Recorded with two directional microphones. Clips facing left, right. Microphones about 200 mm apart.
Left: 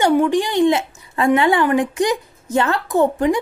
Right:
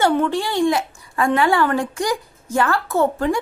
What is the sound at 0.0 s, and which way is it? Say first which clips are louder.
A woman's voice: left 3 dB; 15° left (ahead or behind).